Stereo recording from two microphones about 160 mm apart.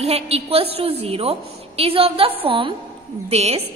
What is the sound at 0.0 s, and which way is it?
A woman's voice, 40° right (ahead or behind).